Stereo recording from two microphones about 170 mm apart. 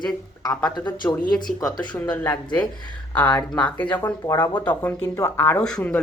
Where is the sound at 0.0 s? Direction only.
25° left (ahead or behind).